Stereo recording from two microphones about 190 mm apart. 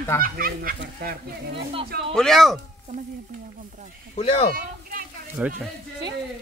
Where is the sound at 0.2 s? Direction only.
50° right (ahead or behind).